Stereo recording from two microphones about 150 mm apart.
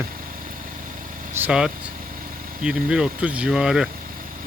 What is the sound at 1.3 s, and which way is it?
Speech, 10° right (ahead or behind).